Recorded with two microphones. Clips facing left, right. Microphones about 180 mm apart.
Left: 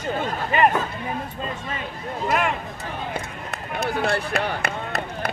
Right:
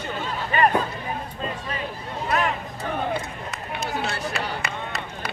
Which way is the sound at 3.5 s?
55° left (ahead or behind).